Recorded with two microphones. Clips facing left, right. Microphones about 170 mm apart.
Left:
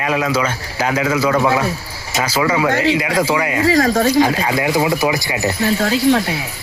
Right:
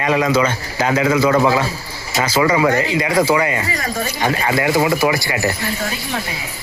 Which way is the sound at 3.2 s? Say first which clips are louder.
Left 1 dB; 10° left (ahead or behind).